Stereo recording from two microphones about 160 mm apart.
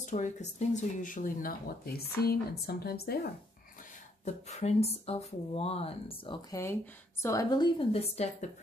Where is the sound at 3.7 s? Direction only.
55° left (ahead or behind); by 6.3 s 35° left (ahead or behind).